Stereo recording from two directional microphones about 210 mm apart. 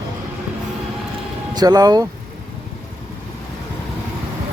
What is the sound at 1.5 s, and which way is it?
Speech, 20° right (ahead or behind).